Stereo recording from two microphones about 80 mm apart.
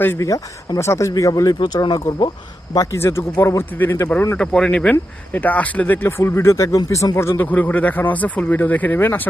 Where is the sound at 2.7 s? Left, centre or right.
Left.